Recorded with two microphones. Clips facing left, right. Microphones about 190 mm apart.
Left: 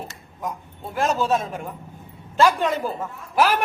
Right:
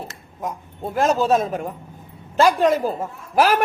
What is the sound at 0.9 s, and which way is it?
A woman's voice, 40° right (ahead or behind).